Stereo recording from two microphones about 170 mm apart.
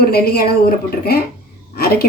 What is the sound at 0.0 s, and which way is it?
A woman's voice, 65° left (ahead or behind).